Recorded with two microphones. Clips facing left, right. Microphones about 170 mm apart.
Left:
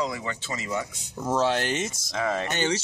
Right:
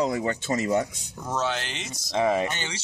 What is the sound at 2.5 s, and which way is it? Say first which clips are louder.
Speech: left 8 dB; 45° left (ahead or behind).